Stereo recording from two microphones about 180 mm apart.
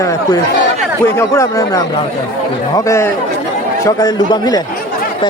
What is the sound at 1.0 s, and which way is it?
A man's voice, 15° left (ahead or behind).